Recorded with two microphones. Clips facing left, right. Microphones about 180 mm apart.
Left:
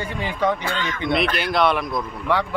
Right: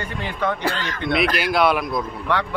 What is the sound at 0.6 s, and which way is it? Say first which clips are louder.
Music: right 1 dB; 35° right (ahead or behind).